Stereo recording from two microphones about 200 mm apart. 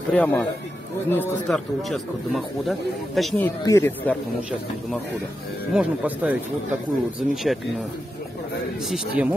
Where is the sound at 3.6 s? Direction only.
15° left (ahead or behind).